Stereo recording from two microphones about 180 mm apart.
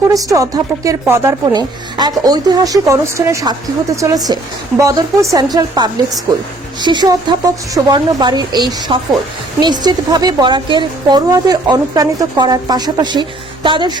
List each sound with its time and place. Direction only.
0.1 s a woman's voice: 20° right (ahead or behind)